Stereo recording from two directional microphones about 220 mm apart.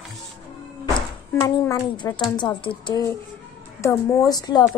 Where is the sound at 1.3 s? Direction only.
20° left (ahead or behind).